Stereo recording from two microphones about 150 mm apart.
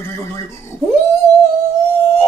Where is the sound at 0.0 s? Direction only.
15° left (ahead or behind).